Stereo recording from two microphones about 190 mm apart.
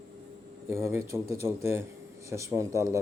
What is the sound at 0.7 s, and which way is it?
A man's voice, 15° right (ahead or behind).